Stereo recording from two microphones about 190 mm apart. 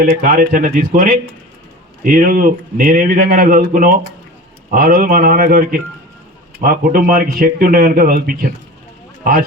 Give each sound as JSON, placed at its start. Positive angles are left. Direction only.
{"t": 0.0, "sound": "speech", "side_deg": -50}